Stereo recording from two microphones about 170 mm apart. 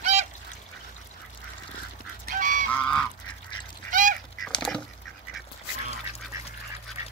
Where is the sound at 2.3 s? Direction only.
45° right (ahead or behind).